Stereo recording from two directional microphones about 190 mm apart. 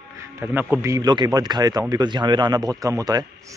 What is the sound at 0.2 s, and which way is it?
Speech, 15° right (ahead or behind).